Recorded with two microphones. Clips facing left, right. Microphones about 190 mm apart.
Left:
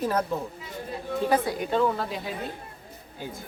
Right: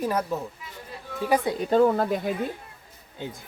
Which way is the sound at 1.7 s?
45° right (ahead or behind).